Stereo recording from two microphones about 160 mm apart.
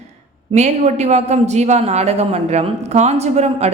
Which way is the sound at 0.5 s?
45° right (ahead or behind).